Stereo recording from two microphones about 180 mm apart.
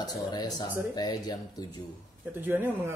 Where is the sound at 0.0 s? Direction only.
20° left (ahead or behind).